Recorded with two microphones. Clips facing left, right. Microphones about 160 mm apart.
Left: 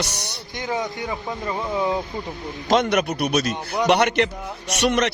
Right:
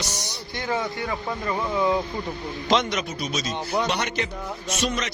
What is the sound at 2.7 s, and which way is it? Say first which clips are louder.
A man's voice: left 5 dB; 55° left (ahead or behind).